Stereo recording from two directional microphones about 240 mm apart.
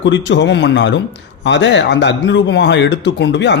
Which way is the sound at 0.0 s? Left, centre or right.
Left.